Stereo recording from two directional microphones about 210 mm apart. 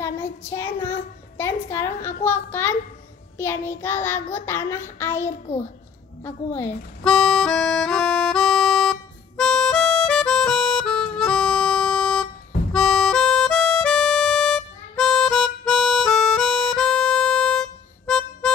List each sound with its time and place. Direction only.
0.0 s child singing: 10° left (ahead or behind)
1.4 s a sound: 10° left (ahead or behind)
2.2 s child singing: 10° left (ahead or behind)
6.2 s music: 10° left (ahead or behind)
9.4 s harmonica: 5° left (ahead or behind)